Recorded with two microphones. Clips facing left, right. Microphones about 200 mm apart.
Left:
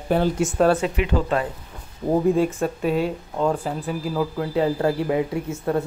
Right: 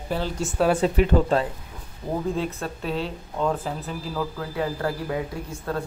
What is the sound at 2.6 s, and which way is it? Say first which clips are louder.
Speech: left 7 dB; 10° left (ahead or behind).